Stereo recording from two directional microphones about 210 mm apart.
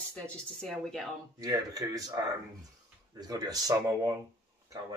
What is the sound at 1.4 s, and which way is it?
Speech, 15° right (ahead or behind).